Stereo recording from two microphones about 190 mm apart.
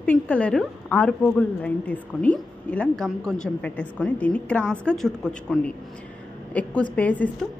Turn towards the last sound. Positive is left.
turn(degrees=5)  # may be behind; listen again after turning